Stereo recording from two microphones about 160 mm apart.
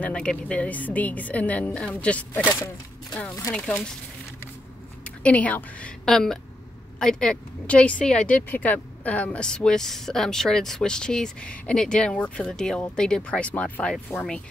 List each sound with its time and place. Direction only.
0.0 s a woman's voice: 5° left (ahead or behind)
3.5 s speech: 5° left (ahead or behind)
5.0 s speech: 10° left (ahead or behind)